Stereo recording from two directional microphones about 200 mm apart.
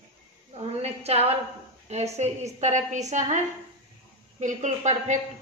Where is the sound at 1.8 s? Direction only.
35° right (ahead or behind).